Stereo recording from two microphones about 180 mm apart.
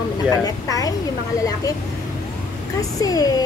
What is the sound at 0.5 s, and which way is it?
Speech, 20° left (ahead or behind).